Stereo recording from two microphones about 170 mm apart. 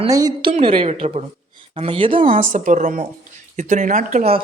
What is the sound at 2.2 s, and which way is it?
A woman's voice, 50° right (ahead or behind).